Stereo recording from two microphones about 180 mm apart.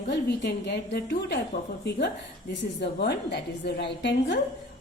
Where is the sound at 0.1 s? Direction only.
65° left (ahead or behind).